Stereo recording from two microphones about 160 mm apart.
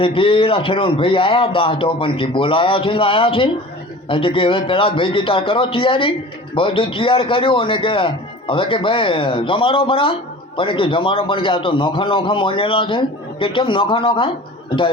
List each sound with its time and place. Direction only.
0.0 s a man's voice: 35° left (ahead or behind)